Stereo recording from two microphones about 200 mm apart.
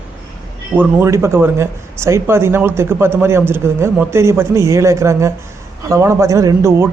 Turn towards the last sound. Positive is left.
turn(degrees=-15)  # may be behind; listen again after turning